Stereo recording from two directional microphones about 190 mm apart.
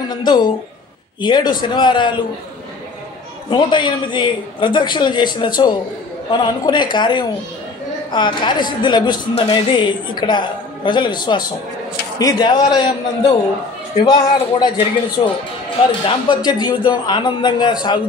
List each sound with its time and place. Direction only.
0.1 s a woman's voice: 20° left (ahead or behind)
3.4 s a woman's voice: 25° left (ahead or behind)
16.1 s a woman's voice: 25° left (ahead or behind)